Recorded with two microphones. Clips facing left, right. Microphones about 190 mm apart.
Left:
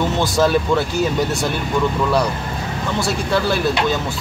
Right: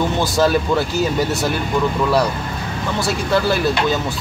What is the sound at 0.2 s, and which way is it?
Speech, centre (ahead or behind).